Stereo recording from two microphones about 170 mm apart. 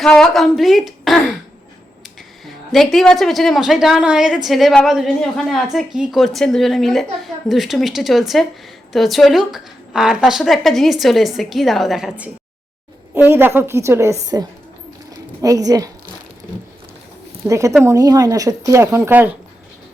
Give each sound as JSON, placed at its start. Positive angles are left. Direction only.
{"t": 0.0, "sound": "a woman's voice", "side_deg": 5}
{"t": 2.4, "sound": "a woman's voice", "side_deg": 0}
{"t": 15.1, "sound": "a sound", "side_deg": -20}
{"t": 17.5, "sound": "speech", "side_deg": -20}